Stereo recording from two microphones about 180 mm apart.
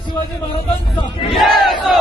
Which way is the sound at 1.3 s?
Centre (ahead or behind).